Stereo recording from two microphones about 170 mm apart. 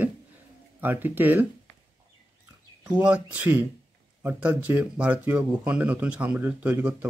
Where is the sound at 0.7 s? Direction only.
10° right (ahead or behind).